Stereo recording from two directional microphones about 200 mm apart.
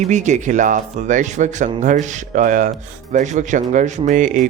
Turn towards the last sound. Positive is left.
turn(degrees=-40)  # may be behind; listen again after turning